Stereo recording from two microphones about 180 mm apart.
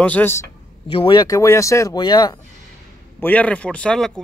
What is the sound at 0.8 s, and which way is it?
Speech, 30° left (ahead or behind).